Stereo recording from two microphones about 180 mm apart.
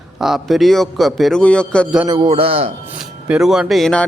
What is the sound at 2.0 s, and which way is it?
Music, 25° right (ahead or behind).